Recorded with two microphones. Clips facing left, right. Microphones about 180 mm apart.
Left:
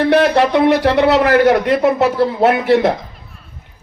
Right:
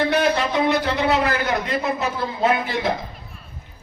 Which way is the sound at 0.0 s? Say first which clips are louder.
Left 7 dB; 70° left (ahead or behind).